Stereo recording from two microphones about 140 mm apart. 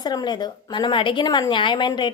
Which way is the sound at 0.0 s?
30° left (ahead or behind).